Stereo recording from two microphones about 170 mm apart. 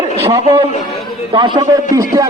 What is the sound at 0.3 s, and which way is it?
A man's voice, 25° right (ahead or behind).